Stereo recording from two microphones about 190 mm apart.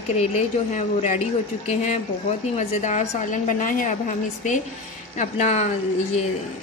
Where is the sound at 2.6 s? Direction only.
40° left (ahead or behind).